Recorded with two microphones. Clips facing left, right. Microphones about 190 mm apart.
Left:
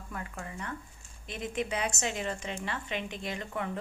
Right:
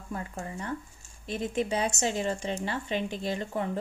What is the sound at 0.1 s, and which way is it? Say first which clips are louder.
Speech: right 5 dB; 30° right (ahead or behind).